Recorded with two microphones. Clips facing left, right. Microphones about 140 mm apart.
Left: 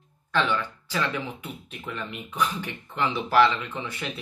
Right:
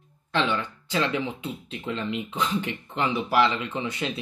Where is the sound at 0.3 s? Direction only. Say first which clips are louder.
Even; 20° right (ahead or behind).